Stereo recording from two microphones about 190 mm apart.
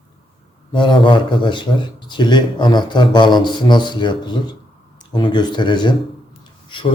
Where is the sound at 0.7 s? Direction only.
25° left (ahead or behind).